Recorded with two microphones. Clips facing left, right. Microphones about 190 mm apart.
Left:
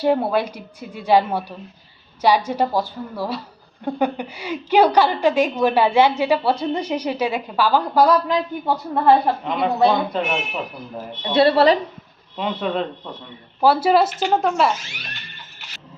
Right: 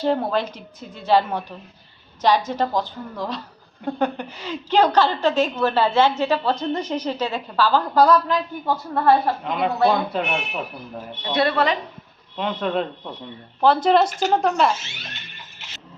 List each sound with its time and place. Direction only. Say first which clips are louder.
0.0 s a woman's voice: left 3 dB; 10° left (ahead or behind)
9.4 s speech: left 2 dB; centre (ahead or behind)
11.2 s a woman's voice: left 6 dB; 30° left (ahead or behind)
12.4 s a woman's voice: even; centre (ahead or behind)
14.1 s speech: even; 45° right (ahead or behind)
14.3 s speech: left 1 dB; centre (ahead or behind)
14.8 s a sound: left 1 dB; 25° right (ahead or behind)